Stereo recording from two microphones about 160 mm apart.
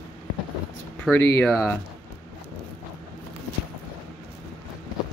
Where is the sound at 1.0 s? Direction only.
10° left (ahead or behind).